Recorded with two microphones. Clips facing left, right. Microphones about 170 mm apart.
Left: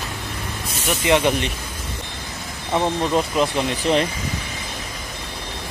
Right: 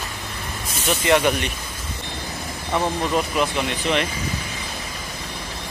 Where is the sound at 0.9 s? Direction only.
20° left (ahead or behind).